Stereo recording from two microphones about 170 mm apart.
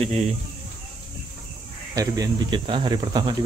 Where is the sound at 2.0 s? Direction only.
25° right (ahead or behind).